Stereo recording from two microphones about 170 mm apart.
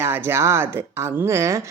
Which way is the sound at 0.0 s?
15° right (ahead or behind).